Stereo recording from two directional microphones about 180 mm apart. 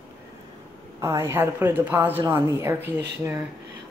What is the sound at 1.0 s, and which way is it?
A woman's voice, 15° right (ahead or behind).